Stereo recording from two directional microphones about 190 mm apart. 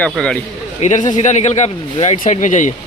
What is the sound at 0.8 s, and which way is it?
A man's voice, 40° left (ahead or behind).